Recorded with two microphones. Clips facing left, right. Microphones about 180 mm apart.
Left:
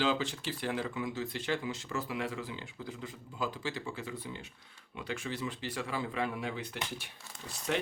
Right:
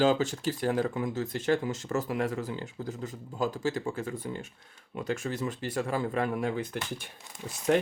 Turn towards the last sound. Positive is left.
turn(degrees=-45)  # may be behind; listen again after turning